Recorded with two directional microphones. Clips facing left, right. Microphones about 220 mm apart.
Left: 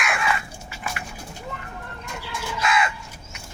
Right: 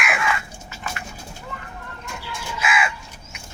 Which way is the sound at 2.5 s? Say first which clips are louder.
Left 1 dB; 5° right (ahead or behind).